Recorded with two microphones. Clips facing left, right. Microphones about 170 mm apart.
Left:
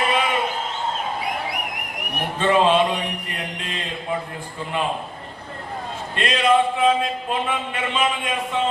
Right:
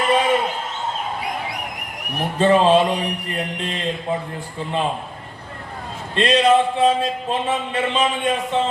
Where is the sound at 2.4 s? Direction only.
35° right (ahead or behind).